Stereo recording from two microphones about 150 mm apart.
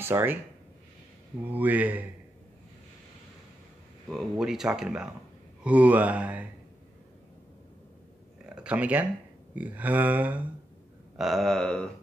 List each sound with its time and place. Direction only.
0.0 s speech: 15° right (ahead or behind)
1.4 s speech: 10° right (ahead or behind)
4.1 s speech: centre (ahead or behind)
8.5 s speech: 10° right (ahead or behind)